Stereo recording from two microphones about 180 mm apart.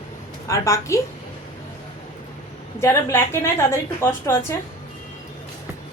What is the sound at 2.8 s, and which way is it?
A woman's voice, 15° left (ahead or behind).